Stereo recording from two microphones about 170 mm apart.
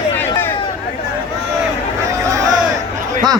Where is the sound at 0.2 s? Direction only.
10° left (ahead or behind).